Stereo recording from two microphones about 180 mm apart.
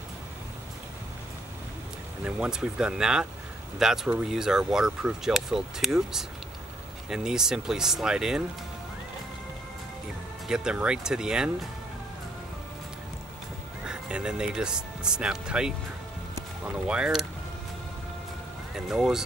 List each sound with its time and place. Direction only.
2.2 s speech: 5° right (ahead or behind)
10.5 s speech: 5° right (ahead or behind)
13.8 s speech: 5° right (ahead or behind)
16.8 s speech: 5° right (ahead or behind)
18.9 s speech: 5° right (ahead or behind)